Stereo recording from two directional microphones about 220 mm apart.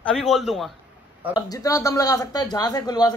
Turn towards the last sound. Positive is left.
turn(degrees=20)  # may be behind; listen again after turning